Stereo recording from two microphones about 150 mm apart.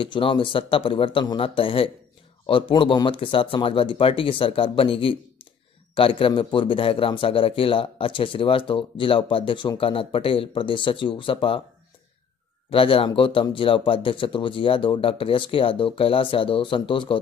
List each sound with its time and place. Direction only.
0.0 s a man's voice: 35° left (ahead or behind)
12.6 s a man's voice: 40° left (ahead or behind)